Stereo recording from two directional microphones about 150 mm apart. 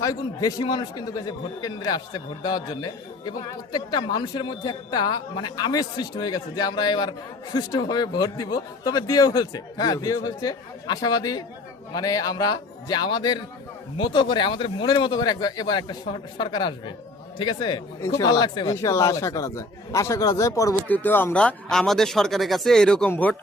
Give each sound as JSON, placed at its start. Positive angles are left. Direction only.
{"t": 0.0, "sound": "a man's voice", "side_deg": 25}
{"t": 20.8, "sound": "speech", "side_deg": 10}